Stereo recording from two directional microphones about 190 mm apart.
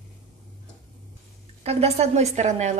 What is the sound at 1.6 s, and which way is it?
A woman's voice, 35° right (ahead or behind).